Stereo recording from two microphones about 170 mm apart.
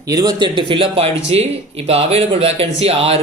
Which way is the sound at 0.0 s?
20° right (ahead or behind).